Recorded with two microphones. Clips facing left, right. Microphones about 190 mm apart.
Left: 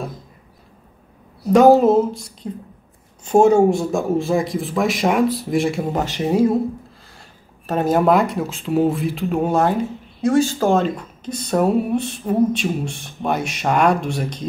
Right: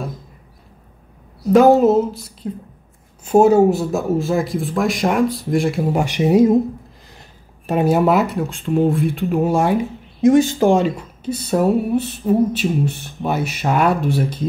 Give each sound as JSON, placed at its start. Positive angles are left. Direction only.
{"t": 1.5, "sound": "speech", "side_deg": 0}
{"t": 6.0, "sound": "speech", "side_deg": -15}